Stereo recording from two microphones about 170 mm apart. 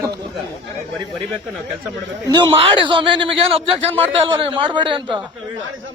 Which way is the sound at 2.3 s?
25° right (ahead or behind).